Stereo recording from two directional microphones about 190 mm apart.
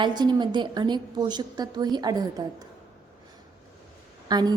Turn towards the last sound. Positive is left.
turn(degrees=-20)  # may be behind; listen again after turning